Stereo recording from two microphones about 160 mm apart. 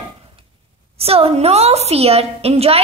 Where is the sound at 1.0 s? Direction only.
40° right (ahead or behind).